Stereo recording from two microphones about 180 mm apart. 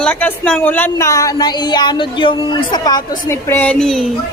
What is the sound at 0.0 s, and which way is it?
Speech, 10° left (ahead or behind).